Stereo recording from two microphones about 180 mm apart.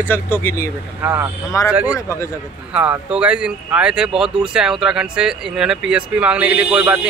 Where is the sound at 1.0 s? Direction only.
15° right (ahead or behind).